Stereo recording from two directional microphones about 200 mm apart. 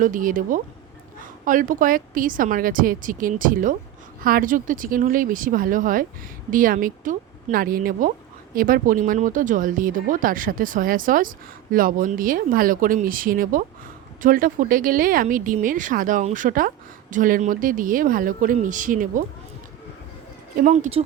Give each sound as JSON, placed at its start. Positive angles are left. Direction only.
{"t": 0.0, "sound": "speech", "side_deg": -40}
{"t": 20.7, "sound": "speech", "side_deg": -35}